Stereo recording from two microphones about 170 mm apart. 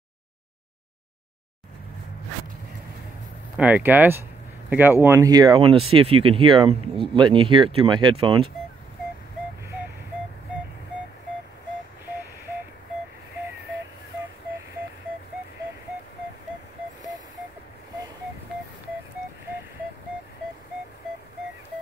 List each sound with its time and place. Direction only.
3.5 s speech: 10° right (ahead or behind); by 8.5 s 30° right (ahead or behind)